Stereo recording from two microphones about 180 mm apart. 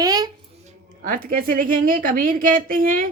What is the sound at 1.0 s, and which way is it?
A woman's voice, 50° right (ahead or behind).